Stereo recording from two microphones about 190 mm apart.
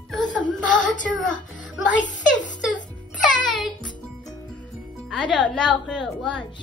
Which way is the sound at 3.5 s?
Centre (ahead or behind).